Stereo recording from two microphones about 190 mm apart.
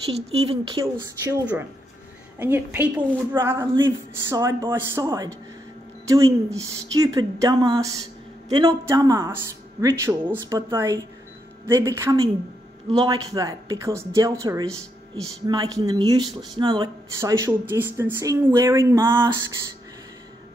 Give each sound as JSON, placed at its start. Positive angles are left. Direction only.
{"t": 0.0, "sound": "speech", "side_deg": -30}
{"t": 0.9, "sound": "speech", "side_deg": -10}